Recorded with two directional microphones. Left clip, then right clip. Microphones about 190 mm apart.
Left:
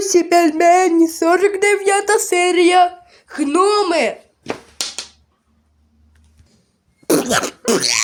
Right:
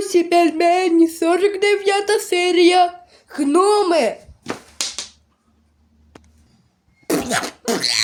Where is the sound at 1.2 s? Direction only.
10° left (ahead or behind).